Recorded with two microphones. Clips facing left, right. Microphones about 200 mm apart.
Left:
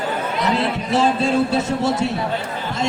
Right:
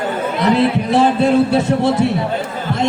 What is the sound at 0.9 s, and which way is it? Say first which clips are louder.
A man's voice: right 3 dB; 60° right (ahead or behind).